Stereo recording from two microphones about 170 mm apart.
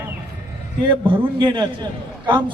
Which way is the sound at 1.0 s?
30° right (ahead or behind).